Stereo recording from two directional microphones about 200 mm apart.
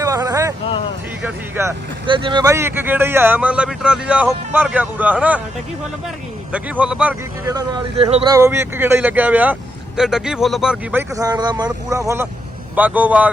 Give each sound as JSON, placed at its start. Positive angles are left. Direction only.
{"t": 0.0, "sound": "a sound", "side_deg": -15}
{"t": 1.2, "sound": "speech", "side_deg": -10}
{"t": 2.0, "sound": "speech", "side_deg": -25}
{"t": 6.5, "sound": "speech", "side_deg": -5}
{"t": 7.4, "sound": "speech", "side_deg": -20}
{"t": 11.1, "sound": "speech", "side_deg": -20}